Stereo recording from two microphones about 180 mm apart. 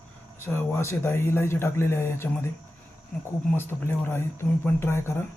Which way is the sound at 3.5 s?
15° left (ahead or behind).